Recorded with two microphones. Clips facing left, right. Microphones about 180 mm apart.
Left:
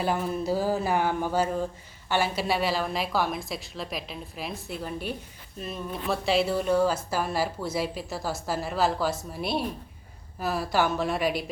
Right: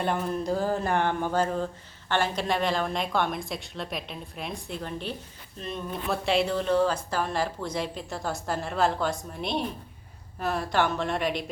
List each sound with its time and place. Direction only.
0.0 s speech: 5° left (ahead or behind)